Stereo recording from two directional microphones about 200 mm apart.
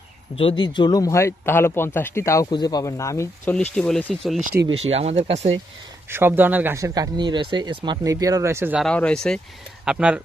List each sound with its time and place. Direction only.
0.3 s speech: 25° left (ahead or behind); by 4.4 s centre (ahead or behind)
4.4 s speech: 40° right (ahead or behind)
4.7 s speech: 30° right (ahead or behind)
6.1 s speech: 10° right (ahead or behind)
8.8 s speech: 5° left (ahead or behind)